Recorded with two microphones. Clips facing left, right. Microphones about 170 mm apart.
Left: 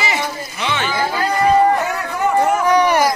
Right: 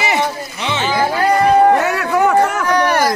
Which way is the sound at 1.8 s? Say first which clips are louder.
Right 5 dB; 85° right.